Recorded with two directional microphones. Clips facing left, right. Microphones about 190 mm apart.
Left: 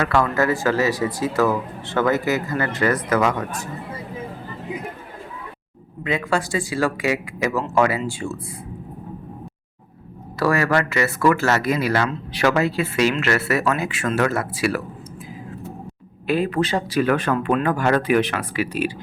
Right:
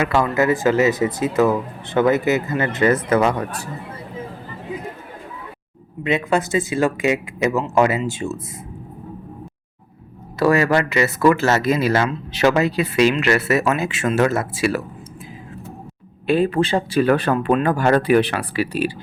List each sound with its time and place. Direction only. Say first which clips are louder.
0.0 s speech: right 1 dB; 20° right (ahead or behind)
6.0 s speech: right 3 dB; 20° right (ahead or behind)
10.4 s speech: right 3 dB; 20° right (ahead or behind)
16.2 s speech: right 3 dB; 30° right (ahead or behind)